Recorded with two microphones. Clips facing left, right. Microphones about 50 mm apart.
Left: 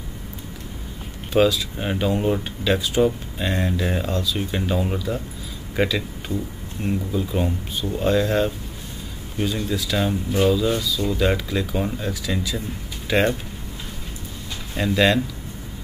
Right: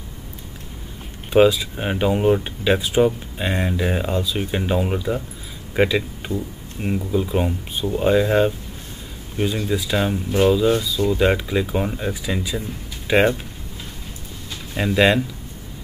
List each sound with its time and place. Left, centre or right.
1.3 s speech: right
14.8 s speech: centre